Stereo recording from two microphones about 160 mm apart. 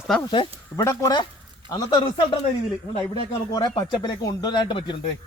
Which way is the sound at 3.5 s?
25° left (ahead or behind).